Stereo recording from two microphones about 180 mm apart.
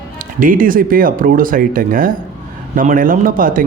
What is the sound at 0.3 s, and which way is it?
Speech, 50° right (ahead or behind).